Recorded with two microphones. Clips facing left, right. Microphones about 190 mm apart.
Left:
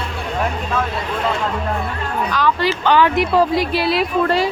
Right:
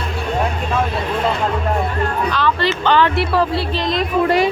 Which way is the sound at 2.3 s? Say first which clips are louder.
Even; 10° left (ahead or behind).